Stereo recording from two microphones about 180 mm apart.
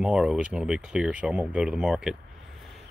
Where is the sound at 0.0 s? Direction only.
5° right (ahead or behind).